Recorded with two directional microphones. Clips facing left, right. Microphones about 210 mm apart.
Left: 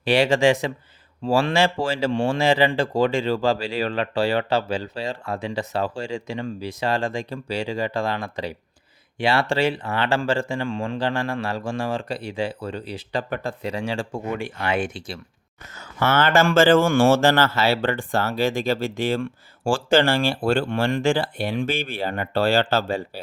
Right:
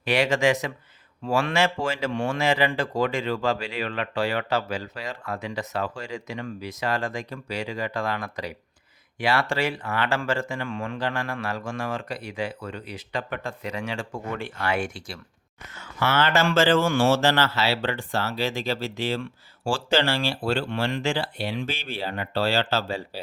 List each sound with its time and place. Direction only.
0.0 s speech: 30° left (ahead or behind)
14.3 s speech: 15° left (ahead or behind)
15.7 s speech: 45° left (ahead or behind)